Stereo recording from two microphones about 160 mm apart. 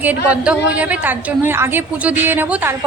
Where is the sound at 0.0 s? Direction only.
10° right (ahead or behind).